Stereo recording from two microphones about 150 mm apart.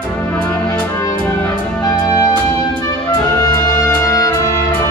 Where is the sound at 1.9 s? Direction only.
20° left (ahead or behind).